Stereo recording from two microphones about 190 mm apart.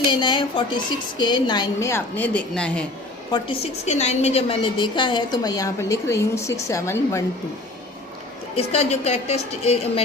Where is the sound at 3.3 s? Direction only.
30° left (ahead or behind).